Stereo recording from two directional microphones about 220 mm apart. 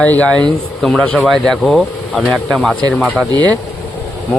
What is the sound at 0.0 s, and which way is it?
Speech, 5° left (ahead or behind).